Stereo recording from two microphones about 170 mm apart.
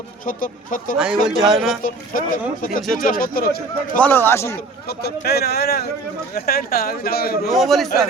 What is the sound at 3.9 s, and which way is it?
Speech, 10° left (ahead or behind).